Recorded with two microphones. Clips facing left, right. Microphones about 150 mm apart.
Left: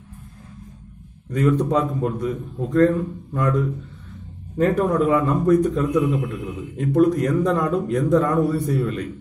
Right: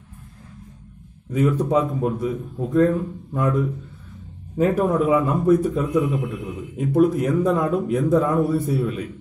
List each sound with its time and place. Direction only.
1.3 s a man's voice: 5° right (ahead or behind)